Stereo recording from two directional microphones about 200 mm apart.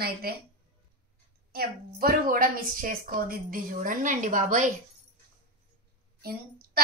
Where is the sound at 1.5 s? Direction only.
45° right (ahead or behind).